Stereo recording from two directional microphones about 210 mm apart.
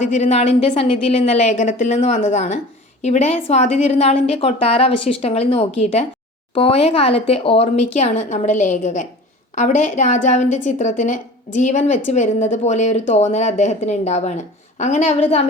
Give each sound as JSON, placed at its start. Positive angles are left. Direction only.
{"t": 0.0, "sound": "a woman's voice", "side_deg": 35}